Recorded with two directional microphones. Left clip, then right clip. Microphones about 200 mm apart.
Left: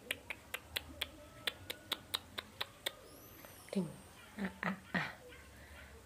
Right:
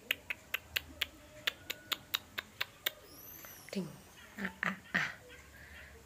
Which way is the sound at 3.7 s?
10° left (ahead or behind).